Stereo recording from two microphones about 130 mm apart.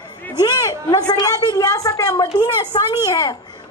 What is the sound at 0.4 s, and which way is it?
A woman's voice, 30° left (ahead or behind).